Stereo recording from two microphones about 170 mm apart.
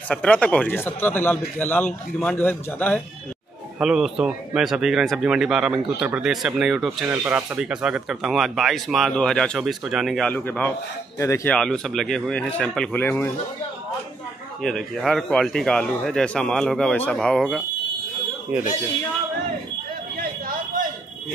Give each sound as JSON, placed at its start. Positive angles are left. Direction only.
{"t": 0.1, "sound": "a man's voice", "side_deg": 5}
{"t": 3.8, "sound": "a man's voice", "side_deg": -5}
{"t": 11.5, "sound": "speech", "side_deg": 5}
{"t": 14.6, "sound": "speech", "side_deg": 0}
{"t": 20.2, "sound": "a sound", "side_deg": -55}